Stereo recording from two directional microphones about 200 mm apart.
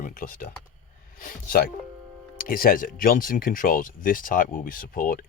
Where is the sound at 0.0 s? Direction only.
45° left (ahead or behind).